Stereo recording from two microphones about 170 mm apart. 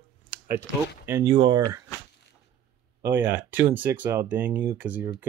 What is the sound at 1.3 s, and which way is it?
Speech, 30° right (ahead or behind).